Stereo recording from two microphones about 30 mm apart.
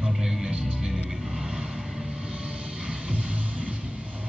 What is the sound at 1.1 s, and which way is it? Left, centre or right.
Vehicle, centre.